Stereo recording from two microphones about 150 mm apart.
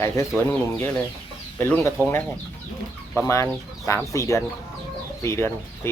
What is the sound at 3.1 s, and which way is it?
Speech, 20° left (ahead or behind).